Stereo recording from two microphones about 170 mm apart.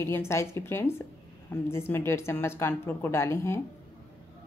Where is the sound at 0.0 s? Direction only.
15° left (ahead or behind).